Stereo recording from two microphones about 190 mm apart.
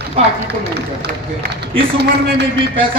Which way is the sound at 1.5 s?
60° right (ahead or behind).